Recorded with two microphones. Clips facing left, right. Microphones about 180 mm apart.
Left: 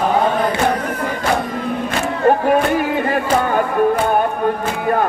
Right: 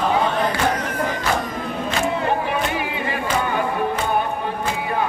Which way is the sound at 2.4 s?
45° left (ahead or behind).